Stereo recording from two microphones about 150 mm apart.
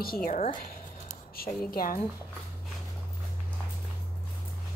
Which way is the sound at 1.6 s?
80° left.